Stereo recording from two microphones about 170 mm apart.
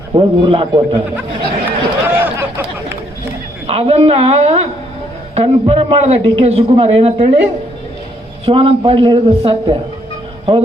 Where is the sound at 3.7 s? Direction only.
35° right (ahead or behind).